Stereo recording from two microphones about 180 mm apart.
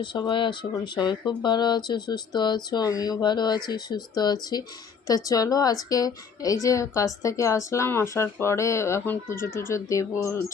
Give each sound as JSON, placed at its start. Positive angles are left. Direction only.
{"t": 0.0, "sound": "a woman's voice", "side_deg": 25}